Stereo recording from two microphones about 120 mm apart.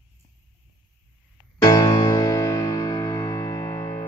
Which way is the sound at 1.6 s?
30° left (ahead or behind).